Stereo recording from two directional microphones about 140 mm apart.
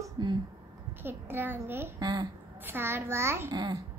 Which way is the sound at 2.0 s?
30° right (ahead or behind).